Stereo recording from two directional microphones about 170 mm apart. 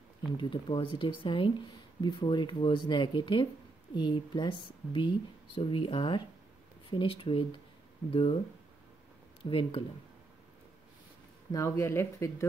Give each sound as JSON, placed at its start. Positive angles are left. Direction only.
{"t": 0.4, "sound": "speech", "side_deg": 30}
{"t": 9.4, "sound": "speech", "side_deg": 30}
{"t": 11.5, "sound": "speech", "side_deg": 15}